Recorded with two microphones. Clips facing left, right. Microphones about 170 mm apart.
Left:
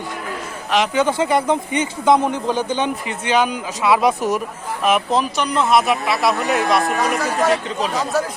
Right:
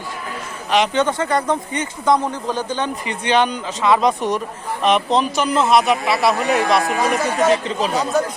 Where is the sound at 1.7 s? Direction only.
25° left (ahead or behind).